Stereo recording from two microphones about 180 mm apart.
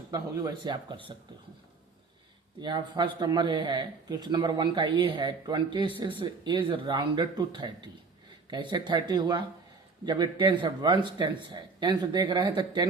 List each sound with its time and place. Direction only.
0.1 s speech: 25° right (ahead or behind)
2.6 s speech: 25° right (ahead or behind)